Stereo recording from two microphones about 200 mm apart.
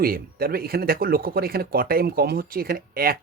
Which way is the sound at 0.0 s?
50° right (ahead or behind).